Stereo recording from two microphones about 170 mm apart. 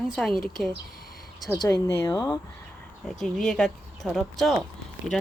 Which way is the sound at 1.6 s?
15° left (ahead or behind).